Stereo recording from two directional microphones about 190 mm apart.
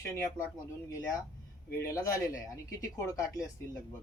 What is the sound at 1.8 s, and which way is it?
Speech, 15° left (ahead or behind).